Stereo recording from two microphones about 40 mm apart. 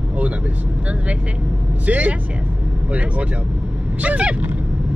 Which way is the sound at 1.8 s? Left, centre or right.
Right.